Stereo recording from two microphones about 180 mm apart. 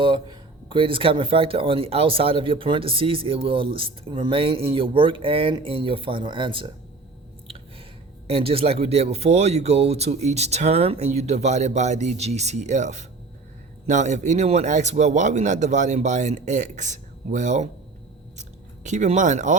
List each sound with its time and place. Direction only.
0.0 s speech: 25° right (ahead or behind)
8.3 s speech: 35° right (ahead or behind)